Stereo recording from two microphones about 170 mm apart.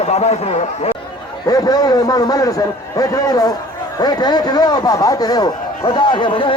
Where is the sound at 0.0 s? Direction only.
40° left (ahead or behind).